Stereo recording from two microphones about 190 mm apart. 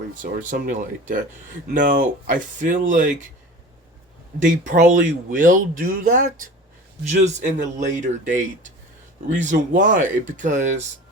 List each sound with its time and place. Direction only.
0.1 s speech: 45° right (ahead or behind)
4.4 s a man's voice: 40° right (ahead or behind)